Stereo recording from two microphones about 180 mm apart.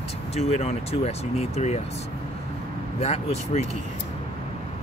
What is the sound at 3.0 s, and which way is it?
Speech, 35° left (ahead or behind).